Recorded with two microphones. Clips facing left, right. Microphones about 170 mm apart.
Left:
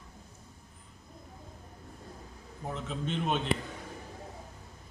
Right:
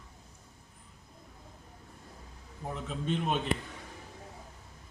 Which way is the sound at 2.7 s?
5° right (ahead or behind).